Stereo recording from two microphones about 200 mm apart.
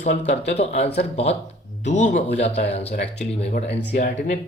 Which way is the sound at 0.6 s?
30° left (ahead or behind).